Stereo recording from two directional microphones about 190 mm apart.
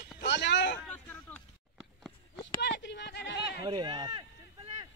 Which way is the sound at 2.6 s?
65° left (ahead or behind).